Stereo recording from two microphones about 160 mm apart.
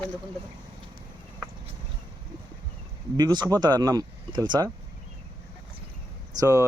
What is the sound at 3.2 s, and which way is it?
Speech, 25° right (ahead or behind).